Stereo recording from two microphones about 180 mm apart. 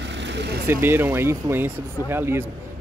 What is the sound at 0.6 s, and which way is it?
Speech, 10° right (ahead or behind).